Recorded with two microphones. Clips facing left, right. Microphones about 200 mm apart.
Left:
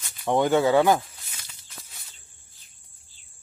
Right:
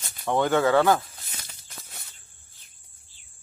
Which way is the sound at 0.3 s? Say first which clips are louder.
Left 1 dB; 15° left (ahead or behind).